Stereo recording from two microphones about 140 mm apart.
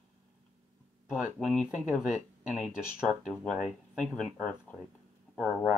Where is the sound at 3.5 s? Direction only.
Centre (ahead or behind).